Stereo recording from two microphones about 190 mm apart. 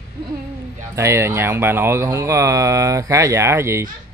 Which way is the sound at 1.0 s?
15° right (ahead or behind).